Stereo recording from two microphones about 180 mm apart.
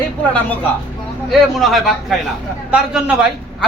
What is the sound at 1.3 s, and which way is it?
A man's voice, centre (ahead or behind).